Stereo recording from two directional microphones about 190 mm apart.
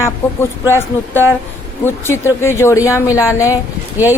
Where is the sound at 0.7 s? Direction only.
10° left (ahead or behind).